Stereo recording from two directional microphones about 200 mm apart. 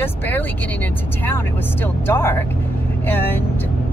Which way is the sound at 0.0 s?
10° left (ahead or behind).